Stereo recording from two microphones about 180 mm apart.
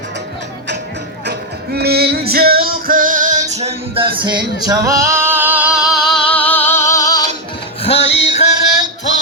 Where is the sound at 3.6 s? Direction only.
30° right (ahead or behind).